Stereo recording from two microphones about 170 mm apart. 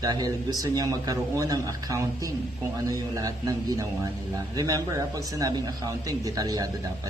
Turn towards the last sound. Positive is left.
turn(degrees=-20)  # may be behind; listen again after turning